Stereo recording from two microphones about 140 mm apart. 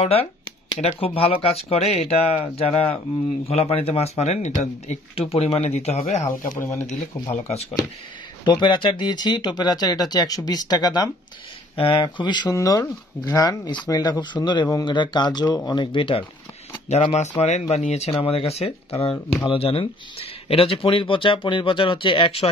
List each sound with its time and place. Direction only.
0.0 s speech: 45° left (ahead or behind)
6.6 s speech: 20° left (ahead or behind)
8.5 s speech: 35° left (ahead or behind)
16.9 s speech: 50° left (ahead or behind)